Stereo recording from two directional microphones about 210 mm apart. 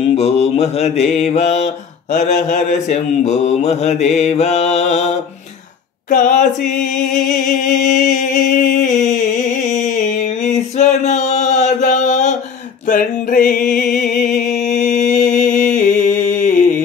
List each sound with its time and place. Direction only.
0.1 s mantra: 30° left (ahead or behind)
7.5 s mantra: 35° left (ahead or behind)
8.1 s a sound: 40° left (ahead or behind)
12.8 s mantra: 40° left (ahead or behind)
13.7 s music: 45° left (ahead or behind)